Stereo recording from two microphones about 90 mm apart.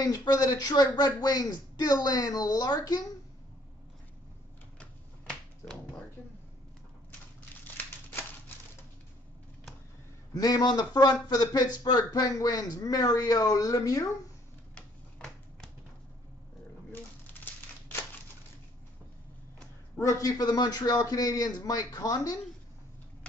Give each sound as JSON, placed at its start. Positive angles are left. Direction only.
{"t": 0.3, "sound": "speech", "side_deg": 45}
{"t": 5.3, "sound": "finger snapping", "side_deg": 5}
{"t": 7.6, "sound": "scissors", "side_deg": 20}
{"t": 10.3, "sound": "speech", "side_deg": 45}
{"t": 14.8, "sound": "finger snapping", "side_deg": 10}
{"t": 20.0, "sound": "speech", "side_deg": 35}